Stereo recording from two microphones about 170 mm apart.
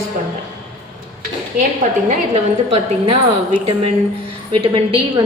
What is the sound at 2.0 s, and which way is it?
A woman's voice, 40° right (ahead or behind).